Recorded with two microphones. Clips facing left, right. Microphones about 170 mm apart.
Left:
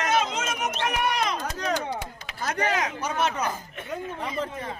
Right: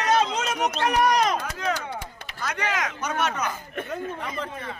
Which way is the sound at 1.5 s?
40° left (ahead or behind).